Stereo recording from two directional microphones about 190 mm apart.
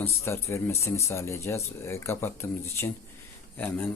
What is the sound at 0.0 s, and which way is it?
Speech, 10° left (ahead or behind).